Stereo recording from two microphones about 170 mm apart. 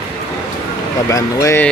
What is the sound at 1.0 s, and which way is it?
Speech, 20° left (ahead or behind).